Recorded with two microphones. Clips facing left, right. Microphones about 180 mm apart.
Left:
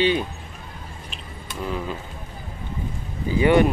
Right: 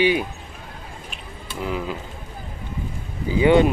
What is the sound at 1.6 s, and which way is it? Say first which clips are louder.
Speech: right 1 dB; 15° right (ahead or behind).